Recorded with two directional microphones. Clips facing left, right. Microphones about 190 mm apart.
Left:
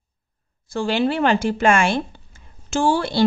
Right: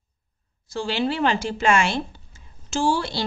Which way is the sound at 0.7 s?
55° left (ahead or behind).